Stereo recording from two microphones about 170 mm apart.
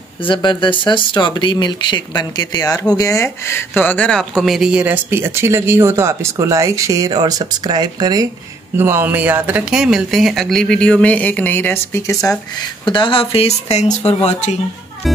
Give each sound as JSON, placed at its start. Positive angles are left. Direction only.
{"t": 0.2, "sound": "speech", "side_deg": 30}
{"t": 12.8, "sound": "speech", "side_deg": 30}
{"t": 15.0, "sound": "music", "side_deg": 0}